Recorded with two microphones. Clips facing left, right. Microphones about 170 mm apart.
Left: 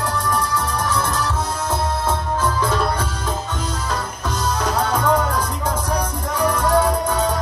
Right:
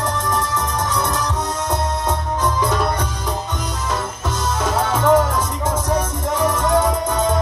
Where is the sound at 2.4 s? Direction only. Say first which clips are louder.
Right 2 dB; 20° right (ahead or behind).